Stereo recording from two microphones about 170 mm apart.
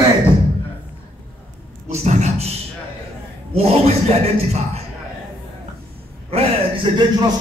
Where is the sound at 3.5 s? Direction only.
35° right (ahead or behind).